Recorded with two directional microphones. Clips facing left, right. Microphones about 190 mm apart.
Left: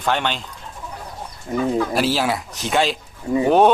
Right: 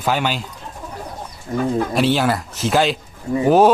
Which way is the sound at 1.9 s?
Centre (ahead or behind).